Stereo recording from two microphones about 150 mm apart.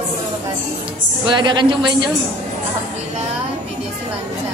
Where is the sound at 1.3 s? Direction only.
30° right (ahead or behind).